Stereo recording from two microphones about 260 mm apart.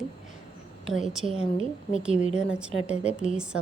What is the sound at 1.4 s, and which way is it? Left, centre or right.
Speech, left.